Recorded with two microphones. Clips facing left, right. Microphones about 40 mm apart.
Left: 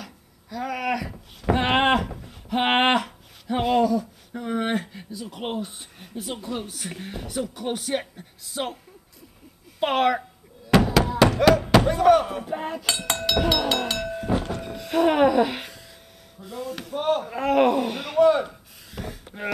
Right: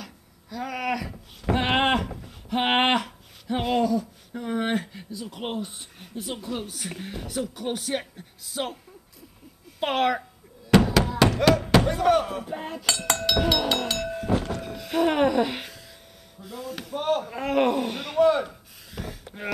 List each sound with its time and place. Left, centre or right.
0.0 s a sound: centre
9.8 s speech: centre
10.7 s knock: centre
12.8 s speech: left
13.3 s a sound: centre
14.3 s train: left
14.6 s train: centre
16.3 s speech: centre